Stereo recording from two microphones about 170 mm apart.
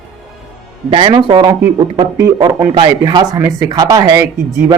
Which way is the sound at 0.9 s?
30° right (ahead or behind).